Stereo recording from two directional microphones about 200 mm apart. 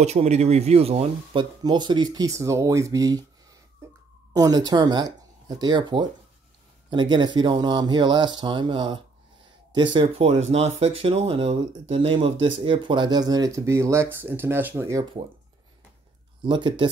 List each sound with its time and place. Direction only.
0.0 s speech: 35° right (ahead or behind)
4.3 s speech: 20° right (ahead or behind)
16.4 s speech: 25° right (ahead or behind)